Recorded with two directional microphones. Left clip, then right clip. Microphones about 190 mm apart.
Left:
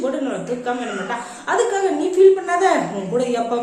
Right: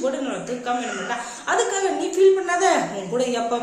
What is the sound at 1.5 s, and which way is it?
A woman's voice, 5° right (ahead or behind).